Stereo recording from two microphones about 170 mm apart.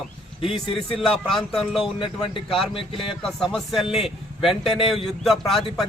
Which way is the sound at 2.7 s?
30° left (ahead or behind).